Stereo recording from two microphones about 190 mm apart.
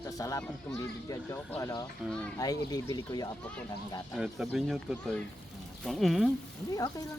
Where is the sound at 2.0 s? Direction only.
5° left (ahead or behind).